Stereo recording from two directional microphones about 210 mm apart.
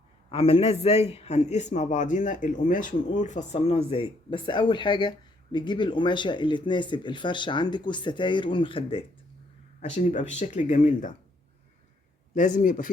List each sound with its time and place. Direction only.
0.3 s a man's voice: 25° left (ahead or behind)
9.8 s speech: 35° left (ahead or behind)
12.3 s speech: 35° left (ahead or behind)